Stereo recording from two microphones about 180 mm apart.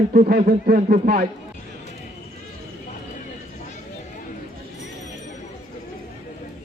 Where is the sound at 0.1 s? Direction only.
50° right (ahead or behind).